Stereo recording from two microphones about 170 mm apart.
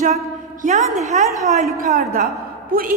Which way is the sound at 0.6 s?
45° right (ahead or behind).